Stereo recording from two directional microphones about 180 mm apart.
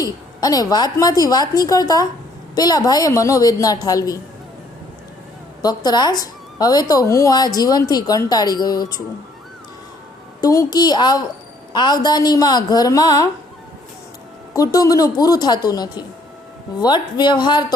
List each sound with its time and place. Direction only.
0.0 s speech: 20° left (ahead or behind)
5.6 s speech: 20° left (ahead or behind)
10.4 s speech: 20° left (ahead or behind)
14.5 s speech: 20° left (ahead or behind)